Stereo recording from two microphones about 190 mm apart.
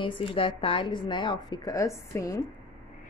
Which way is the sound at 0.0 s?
25° left (ahead or behind).